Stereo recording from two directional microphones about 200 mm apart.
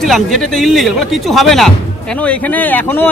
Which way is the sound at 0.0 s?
Centre (ahead or behind).